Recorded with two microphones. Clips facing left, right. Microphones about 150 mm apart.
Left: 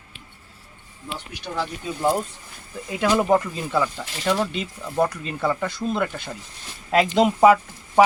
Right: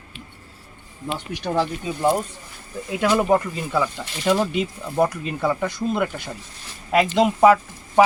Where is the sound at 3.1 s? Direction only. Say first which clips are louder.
Even; 5° right (ahead or behind).